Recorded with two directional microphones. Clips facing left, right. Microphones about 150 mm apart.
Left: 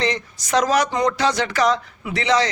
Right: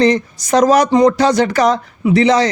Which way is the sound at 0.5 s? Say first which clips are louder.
Right 8 dB; 40° right (ahead or behind).